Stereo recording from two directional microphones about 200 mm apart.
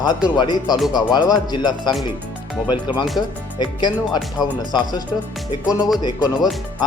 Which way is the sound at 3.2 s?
20° left (ahead or behind).